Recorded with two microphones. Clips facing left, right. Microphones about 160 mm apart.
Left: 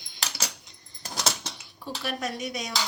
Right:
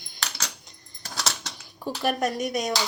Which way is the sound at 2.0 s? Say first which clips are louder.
Right 7 dB; 50° right (ahead or behind).